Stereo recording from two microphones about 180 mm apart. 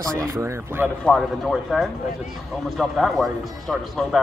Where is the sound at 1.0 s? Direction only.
5° left (ahead or behind).